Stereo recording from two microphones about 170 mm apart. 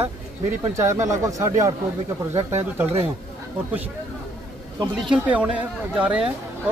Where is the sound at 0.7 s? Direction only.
15° right (ahead or behind).